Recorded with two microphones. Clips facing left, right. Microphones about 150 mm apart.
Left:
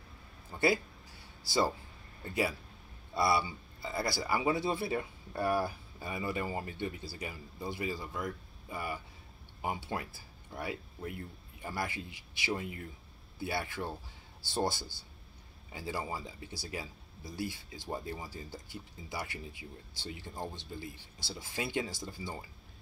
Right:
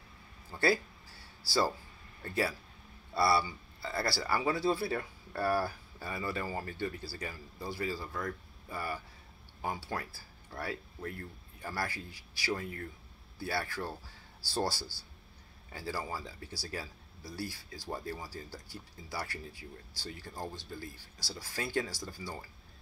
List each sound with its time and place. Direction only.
0.5 s speech: 20° left (ahead or behind)